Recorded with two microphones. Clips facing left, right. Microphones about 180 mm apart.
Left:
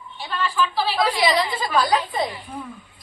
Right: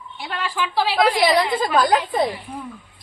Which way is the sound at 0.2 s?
90° right.